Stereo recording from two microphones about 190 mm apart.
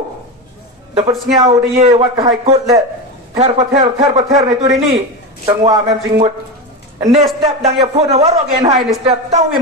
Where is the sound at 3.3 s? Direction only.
35° right (ahead or behind).